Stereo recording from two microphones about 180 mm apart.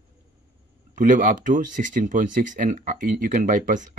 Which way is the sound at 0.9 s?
45° right (ahead or behind).